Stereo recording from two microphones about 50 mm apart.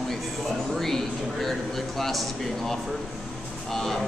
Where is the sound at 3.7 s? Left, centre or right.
Centre.